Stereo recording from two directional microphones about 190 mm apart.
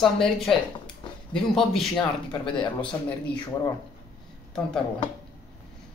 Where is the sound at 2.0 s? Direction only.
25° left (ahead or behind).